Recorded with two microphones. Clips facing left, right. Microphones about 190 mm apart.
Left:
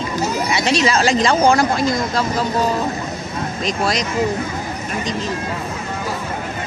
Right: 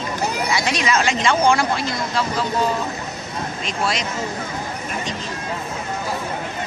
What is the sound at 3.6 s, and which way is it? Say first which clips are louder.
Speech: left 4 dB; 40° left (ahead or behind).